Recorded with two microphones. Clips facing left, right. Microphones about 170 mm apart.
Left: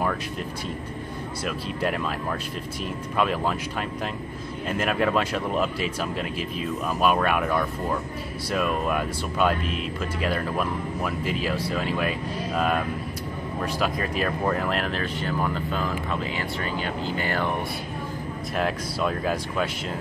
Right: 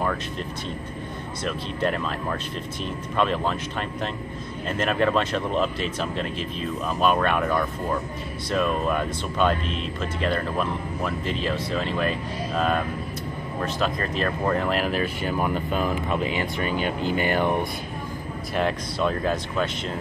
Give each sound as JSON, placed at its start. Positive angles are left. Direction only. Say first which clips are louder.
{"t": 1.4, "sound": "speech", "louder": "right 2 dB", "side_deg": 5}
{"t": 4.6, "sound": "speech", "louder": "right 1 dB", "side_deg": 5}
{"t": 18.5, "sound": "speech", "louder": "right 2 dB", "side_deg": 0}